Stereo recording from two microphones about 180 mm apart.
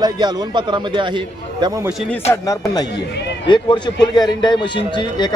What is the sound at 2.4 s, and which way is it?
A man's voice, 20° left (ahead or behind).